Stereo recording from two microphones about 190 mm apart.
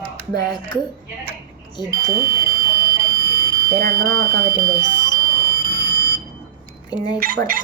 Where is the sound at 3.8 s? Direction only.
50° right (ahead or behind).